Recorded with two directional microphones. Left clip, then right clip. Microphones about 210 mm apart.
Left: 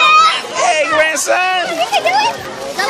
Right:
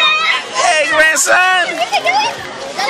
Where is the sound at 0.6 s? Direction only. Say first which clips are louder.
Right 2 dB; 5° right (ahead or behind).